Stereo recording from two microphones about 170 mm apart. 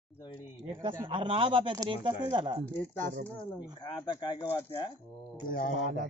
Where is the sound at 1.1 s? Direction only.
30° right (ahead or behind).